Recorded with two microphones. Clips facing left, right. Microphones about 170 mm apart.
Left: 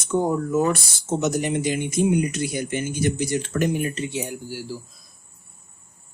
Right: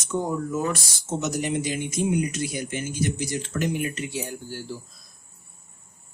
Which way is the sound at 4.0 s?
25° left (ahead or behind).